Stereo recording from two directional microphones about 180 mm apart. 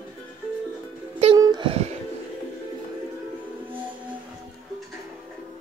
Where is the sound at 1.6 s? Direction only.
35° right (ahead or behind).